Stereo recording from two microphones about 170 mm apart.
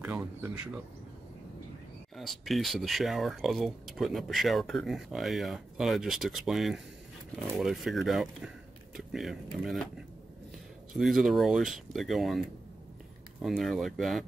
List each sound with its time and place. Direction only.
0.0 s a sound: 10° right (ahead or behind)
2.1 s speech: centre (ahead or behind)
10.9 s speech: centre (ahead or behind)